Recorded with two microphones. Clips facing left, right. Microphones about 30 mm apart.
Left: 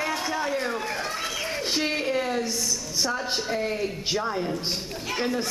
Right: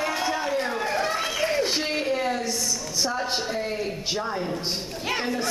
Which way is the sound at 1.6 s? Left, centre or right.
Centre.